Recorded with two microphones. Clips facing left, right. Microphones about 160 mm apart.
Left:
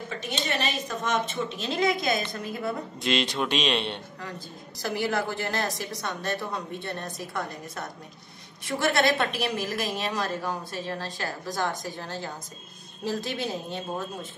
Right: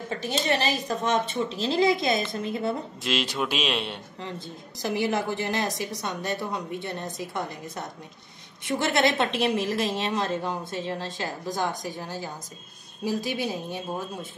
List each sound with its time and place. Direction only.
0.2 s a woman's voice: 35° right (ahead or behind)
3.0 s a man's voice: 5° right (ahead or behind)
4.8 s a woman's voice: 20° right (ahead or behind)